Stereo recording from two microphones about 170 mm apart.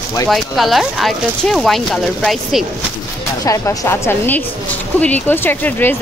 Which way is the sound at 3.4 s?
20° left (ahead or behind).